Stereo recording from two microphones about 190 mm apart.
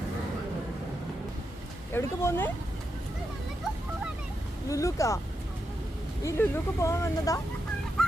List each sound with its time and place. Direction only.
1.9 s speech: 15° left (ahead or behind)
4.7 s speech: 15° left (ahead or behind)
6.2 s speech: 15° left (ahead or behind)
8.0 s fowl: 5° left (ahead or behind)